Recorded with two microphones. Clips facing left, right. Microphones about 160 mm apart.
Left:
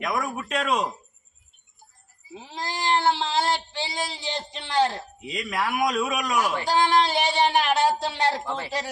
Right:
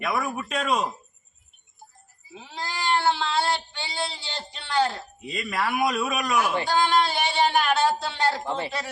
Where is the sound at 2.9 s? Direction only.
20° left (ahead or behind).